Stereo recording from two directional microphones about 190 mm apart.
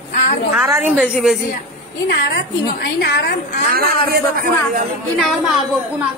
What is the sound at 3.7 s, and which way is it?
A man's voice, 50° right (ahead or behind).